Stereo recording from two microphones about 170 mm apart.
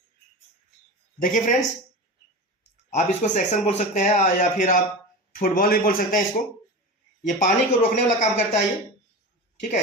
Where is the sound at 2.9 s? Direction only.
45° left (ahead or behind).